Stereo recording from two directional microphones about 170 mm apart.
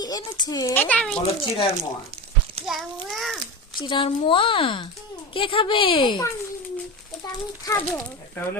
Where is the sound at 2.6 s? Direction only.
35° right (ahead or behind).